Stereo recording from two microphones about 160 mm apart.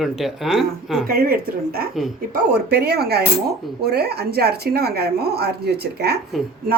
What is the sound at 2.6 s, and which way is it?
A woman's voice, 80° right.